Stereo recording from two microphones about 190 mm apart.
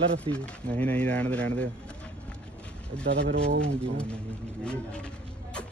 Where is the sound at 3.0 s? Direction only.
70° right (ahead or behind).